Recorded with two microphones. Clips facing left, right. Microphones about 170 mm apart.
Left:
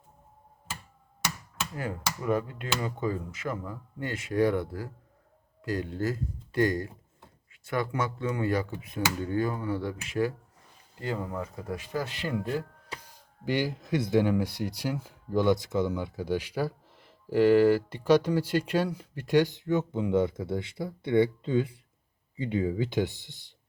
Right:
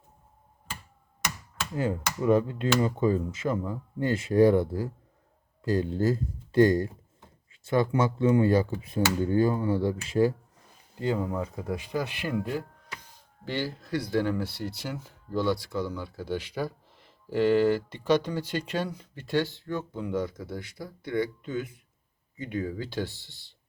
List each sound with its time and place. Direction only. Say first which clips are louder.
1.7 s speech: right 6 dB; 25° right (ahead or behind)
13.4 s speech: left 3 dB; 15° left (ahead or behind)